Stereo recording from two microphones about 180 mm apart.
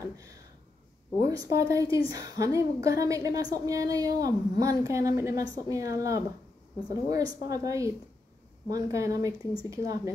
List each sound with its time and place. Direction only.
1.2 s a woman's voice: 20° right (ahead or behind)